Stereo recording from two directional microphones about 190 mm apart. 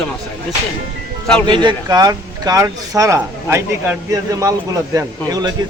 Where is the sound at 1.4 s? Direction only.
25° right (ahead or behind).